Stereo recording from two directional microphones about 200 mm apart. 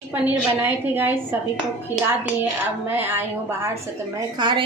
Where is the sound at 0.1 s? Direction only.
10° right (ahead or behind).